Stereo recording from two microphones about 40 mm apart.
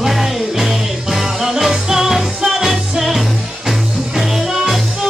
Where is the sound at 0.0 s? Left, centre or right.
Centre.